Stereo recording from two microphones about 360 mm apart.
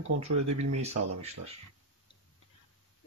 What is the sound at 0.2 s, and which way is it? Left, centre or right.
Speech, centre.